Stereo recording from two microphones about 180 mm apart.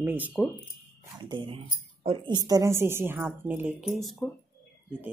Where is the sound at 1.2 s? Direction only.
25° right (ahead or behind); by 4.2 s centre (ahead or behind).